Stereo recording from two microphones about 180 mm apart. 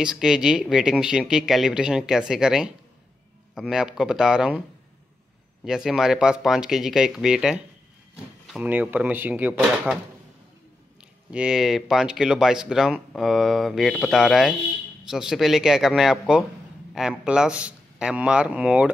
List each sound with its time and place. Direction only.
0.0 s speech: 5° right (ahead or behind)
5.7 s speech: centre (ahead or behind)
11.2 s speech: 5° right (ahead or behind)